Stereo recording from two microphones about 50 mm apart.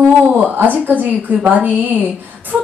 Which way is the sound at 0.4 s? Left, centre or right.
Right.